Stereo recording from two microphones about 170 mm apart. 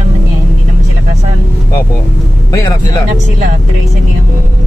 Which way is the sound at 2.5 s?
25° left (ahead or behind).